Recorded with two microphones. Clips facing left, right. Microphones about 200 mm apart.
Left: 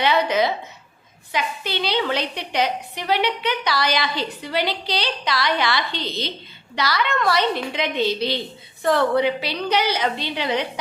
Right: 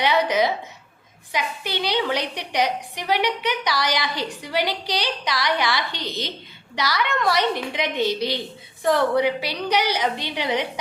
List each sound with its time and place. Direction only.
0.0 s a woman's voice: 15° right (ahead or behind)